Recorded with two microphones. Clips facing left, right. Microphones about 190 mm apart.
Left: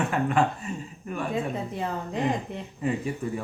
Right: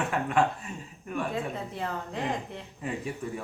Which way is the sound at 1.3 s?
20° left (ahead or behind).